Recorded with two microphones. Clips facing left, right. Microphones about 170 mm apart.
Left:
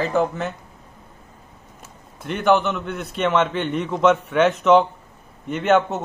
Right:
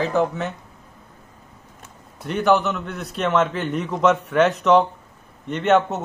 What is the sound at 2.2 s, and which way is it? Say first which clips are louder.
A man's voice: even; centre (ahead or behind).